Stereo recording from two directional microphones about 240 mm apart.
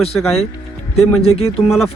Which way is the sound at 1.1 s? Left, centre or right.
Left.